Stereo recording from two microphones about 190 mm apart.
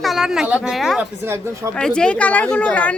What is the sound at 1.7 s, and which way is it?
Speech, 5° left (ahead or behind).